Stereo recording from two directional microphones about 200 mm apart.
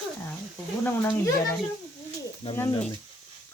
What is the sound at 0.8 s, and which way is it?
Speech, 10° left (ahead or behind).